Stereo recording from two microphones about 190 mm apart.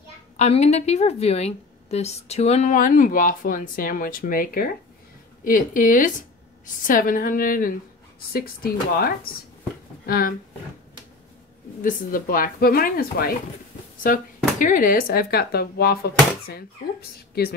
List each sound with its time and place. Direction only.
0.4 s a woman's voice: 35° left (ahead or behind); by 10.3 s 50° left (ahead or behind)
11.8 s a woman's voice: 50° left (ahead or behind)